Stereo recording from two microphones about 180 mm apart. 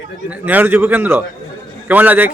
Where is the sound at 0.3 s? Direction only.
10° right (ahead or behind).